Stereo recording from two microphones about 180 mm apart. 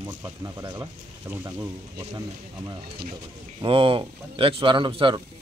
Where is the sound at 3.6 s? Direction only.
30° right (ahead or behind).